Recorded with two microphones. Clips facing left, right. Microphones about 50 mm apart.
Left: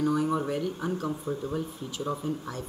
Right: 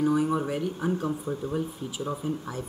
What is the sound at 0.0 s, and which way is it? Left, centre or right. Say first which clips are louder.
Speech: right 2 dB; centre.